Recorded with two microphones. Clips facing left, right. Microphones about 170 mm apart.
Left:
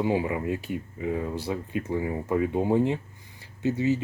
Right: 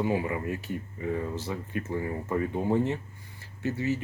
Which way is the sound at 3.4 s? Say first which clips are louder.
Left 5 dB; 20° left (ahead or behind).